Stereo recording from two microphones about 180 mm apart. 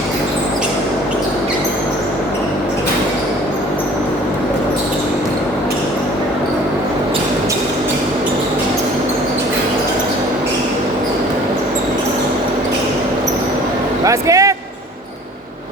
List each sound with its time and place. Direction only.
14.0 s music: 20° right (ahead or behind)